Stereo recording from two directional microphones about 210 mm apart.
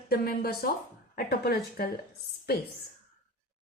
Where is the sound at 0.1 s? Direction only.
45° left (ahead or behind).